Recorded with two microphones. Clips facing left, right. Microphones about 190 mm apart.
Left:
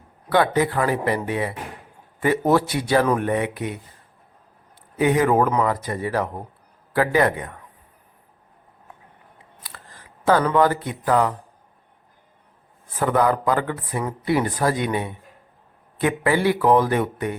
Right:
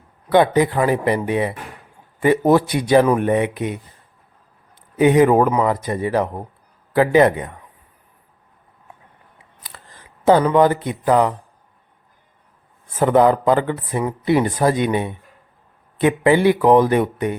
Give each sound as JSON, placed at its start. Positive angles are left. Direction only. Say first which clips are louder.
{"t": 0.3, "sound": "speech", "louder": "right 4 dB", "side_deg": -20}
{"t": 4.9, "sound": "speech", "louder": "right 5 dB", "side_deg": -20}
{"t": 9.6, "sound": "speech", "louder": "right 2 dB", "side_deg": -20}
{"t": 13.0, "sound": "speech", "louder": "right 5 dB", "side_deg": -20}